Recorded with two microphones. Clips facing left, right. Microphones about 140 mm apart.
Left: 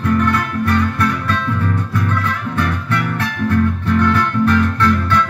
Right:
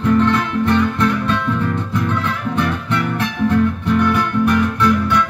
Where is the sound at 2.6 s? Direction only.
20° right (ahead or behind).